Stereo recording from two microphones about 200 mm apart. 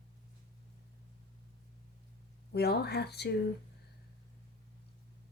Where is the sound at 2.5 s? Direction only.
55° left (ahead or behind).